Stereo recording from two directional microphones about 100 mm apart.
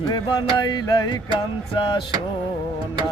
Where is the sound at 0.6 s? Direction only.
45° left (ahead or behind).